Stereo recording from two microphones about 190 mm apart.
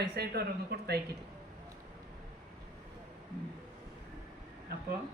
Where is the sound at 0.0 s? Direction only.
55° right (ahead or behind).